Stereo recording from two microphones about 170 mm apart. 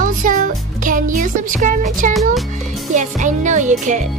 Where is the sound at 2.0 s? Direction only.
50° right (ahead or behind).